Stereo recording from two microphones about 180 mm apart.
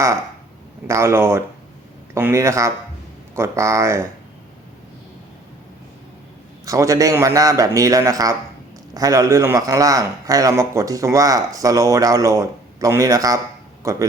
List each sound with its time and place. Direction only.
0.9 s a man's voice: 15° right (ahead or behind)
6.7 s a man's voice: 20° right (ahead or behind)